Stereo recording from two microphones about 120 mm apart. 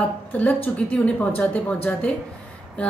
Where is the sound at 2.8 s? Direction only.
10° left (ahead or behind).